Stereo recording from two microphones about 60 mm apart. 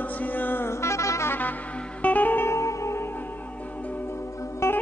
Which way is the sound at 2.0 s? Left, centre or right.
Left.